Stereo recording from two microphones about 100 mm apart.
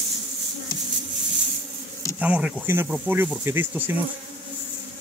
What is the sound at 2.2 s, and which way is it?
Speech, 15° right (ahead or behind).